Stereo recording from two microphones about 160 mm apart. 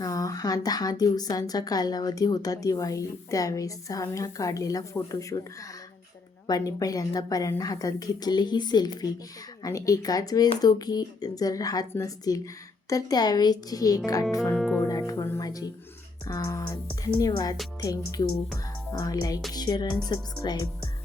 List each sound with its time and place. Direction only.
0.0 s a woman's voice: 20° left (ahead or behind)
6.5 s a woman's voice: 20° left (ahead or behind)
14.5 s speech: centre (ahead or behind)
14.8 s a woman's voice: 20° left (ahead or behind)